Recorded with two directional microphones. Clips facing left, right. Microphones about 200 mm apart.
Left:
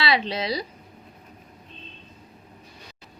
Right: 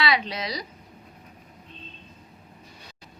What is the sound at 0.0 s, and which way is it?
Speech, 30° left (ahead or behind).